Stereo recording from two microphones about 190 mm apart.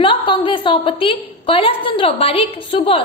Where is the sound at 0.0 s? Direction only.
25° left (ahead or behind).